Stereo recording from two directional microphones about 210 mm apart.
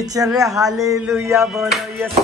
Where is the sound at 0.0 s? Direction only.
15° right (ahead or behind).